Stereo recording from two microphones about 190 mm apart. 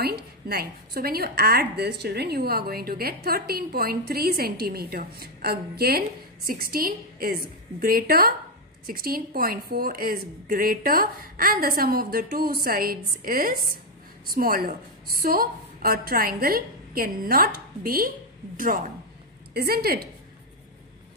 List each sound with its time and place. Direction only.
0.0 s a woman's voice: 55° right (ahead or behind)